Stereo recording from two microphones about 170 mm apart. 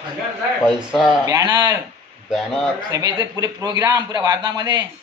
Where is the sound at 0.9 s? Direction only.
5° right (ahead or behind).